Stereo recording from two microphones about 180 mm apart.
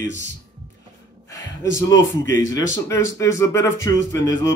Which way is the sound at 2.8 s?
15° left (ahead or behind).